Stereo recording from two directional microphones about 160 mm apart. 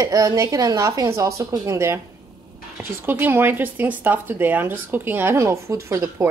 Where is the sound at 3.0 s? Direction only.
10° right (ahead or behind).